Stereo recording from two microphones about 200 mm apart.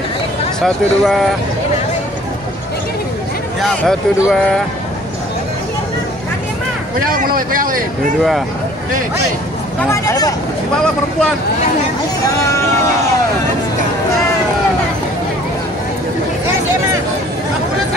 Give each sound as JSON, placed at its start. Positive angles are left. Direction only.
{"t": 0.6, "sound": "speech", "side_deg": 0}
{"t": 3.6, "sound": "speech", "side_deg": 0}
{"t": 7.1, "sound": "speech", "side_deg": -45}
{"t": 9.8, "sound": "speech", "side_deg": 15}
{"t": 12.3, "sound": "speech", "side_deg": 15}